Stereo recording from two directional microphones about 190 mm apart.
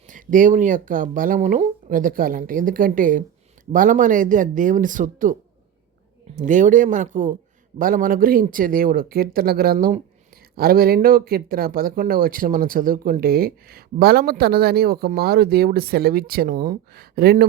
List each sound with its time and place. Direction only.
0.1 s speech: 45° right (ahead or behind)